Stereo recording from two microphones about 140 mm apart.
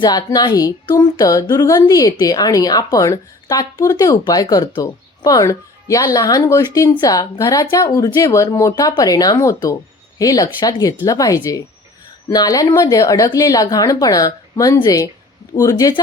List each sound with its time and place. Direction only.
0.0 s speech: 30° left (ahead or behind)